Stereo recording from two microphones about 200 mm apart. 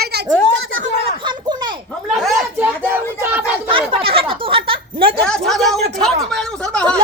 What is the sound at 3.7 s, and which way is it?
Speech, 25° right (ahead or behind).